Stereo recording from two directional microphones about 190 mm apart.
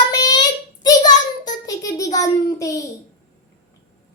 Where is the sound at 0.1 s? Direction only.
20° left (ahead or behind).